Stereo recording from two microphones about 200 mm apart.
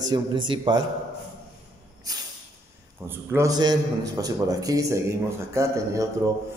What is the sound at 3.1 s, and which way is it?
Speech, 10° right (ahead or behind).